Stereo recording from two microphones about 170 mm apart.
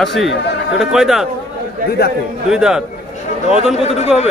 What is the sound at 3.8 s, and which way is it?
Speech, 40° left (ahead or behind).